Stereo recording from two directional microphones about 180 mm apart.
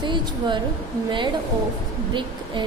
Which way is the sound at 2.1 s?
25° right (ahead or behind).